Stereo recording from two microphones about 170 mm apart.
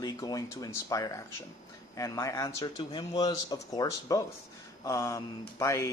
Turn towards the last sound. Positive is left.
turn(degrees=20)  # may be behind; listen again after turning